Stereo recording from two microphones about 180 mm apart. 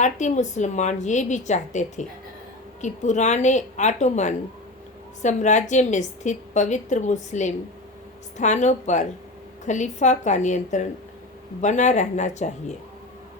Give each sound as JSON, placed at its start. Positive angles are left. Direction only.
{"t": 0.0, "sound": "a woman's voice", "side_deg": 40}